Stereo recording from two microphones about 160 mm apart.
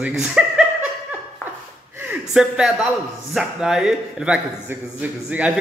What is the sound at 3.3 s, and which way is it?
A man's voice, 5° right (ahead or behind).